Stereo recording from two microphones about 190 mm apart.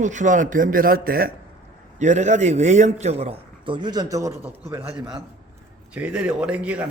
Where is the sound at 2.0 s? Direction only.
40° right (ahead or behind); by 4.6 s 15° right (ahead or behind).